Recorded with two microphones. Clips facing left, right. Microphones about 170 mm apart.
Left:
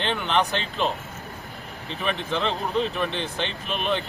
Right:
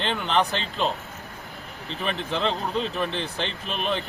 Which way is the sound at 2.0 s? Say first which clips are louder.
Even; centre (ahead or behind).